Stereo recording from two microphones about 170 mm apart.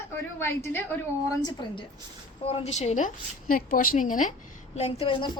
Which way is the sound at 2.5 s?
40° left (ahead or behind).